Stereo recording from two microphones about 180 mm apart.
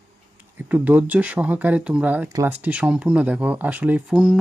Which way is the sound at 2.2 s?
20° right (ahead or behind).